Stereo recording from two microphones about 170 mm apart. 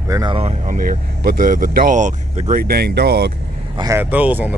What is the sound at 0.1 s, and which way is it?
Speech, 25° right (ahead or behind).